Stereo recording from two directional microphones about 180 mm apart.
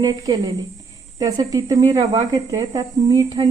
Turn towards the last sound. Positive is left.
turn(degrees=-20)  # may be behind; listen again after turning